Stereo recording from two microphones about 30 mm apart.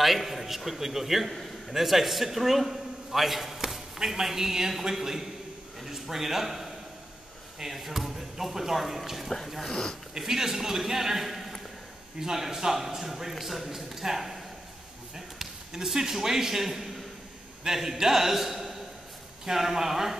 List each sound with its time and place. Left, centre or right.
0.0 s a man's voice: centre
9.7 s speech: left
10.1 s a man's voice: centre